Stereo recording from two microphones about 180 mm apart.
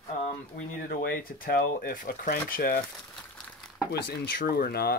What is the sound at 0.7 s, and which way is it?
Speech, 55° left (ahead or behind).